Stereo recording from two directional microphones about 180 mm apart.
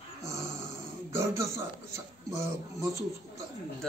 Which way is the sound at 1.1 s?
15° right (ahead or behind).